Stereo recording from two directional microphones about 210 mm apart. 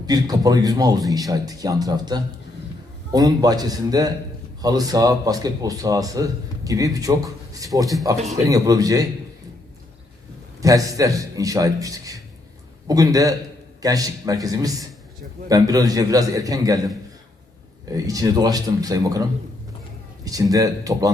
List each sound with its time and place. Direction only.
0.0 s speech: 20° right (ahead or behind)
10.6 s speech: 15° right (ahead or behind)
17.9 s speech: 15° right (ahead or behind)
20.2 s speech: 15° right (ahead or behind)